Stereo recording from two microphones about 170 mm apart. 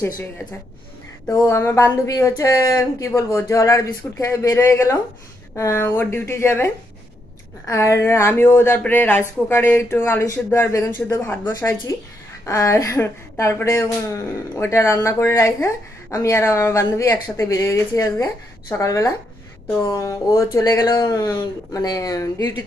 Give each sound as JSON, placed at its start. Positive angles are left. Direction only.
{"t": 0.0, "sound": "speech", "side_deg": 15}